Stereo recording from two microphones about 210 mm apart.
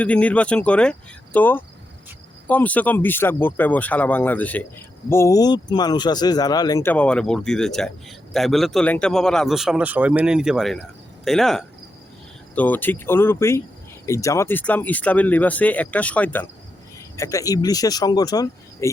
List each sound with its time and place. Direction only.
0.0 s a man's voice: 5° left (ahead or behind)